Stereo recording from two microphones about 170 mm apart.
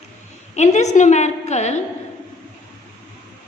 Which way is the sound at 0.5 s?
45° left (ahead or behind).